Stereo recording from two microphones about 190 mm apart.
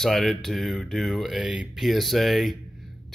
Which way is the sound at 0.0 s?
Centre (ahead or behind).